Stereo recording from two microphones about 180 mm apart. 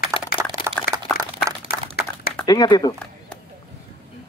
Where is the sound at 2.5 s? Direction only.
20° left (ahead or behind).